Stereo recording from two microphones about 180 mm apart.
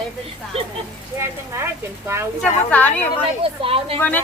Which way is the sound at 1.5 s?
15° right (ahead or behind).